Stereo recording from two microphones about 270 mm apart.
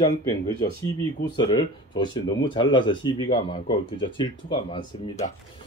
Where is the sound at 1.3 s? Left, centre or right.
Centre.